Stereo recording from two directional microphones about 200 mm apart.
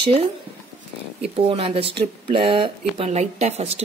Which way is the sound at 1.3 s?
30° right (ahead or behind).